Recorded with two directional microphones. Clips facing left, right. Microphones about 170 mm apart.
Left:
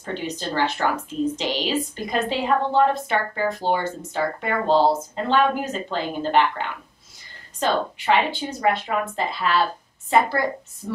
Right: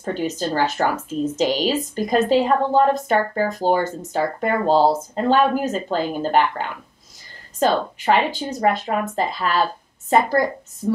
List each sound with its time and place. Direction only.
0.0 s a woman's voice: 45° right (ahead or behind)
7.5 s a woman's voice: 45° right (ahead or behind)